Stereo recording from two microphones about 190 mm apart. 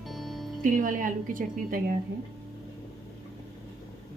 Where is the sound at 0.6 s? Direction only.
45° right (ahead or behind).